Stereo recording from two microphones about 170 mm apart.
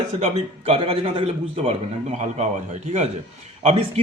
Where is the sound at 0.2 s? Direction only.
40° right (ahead or behind).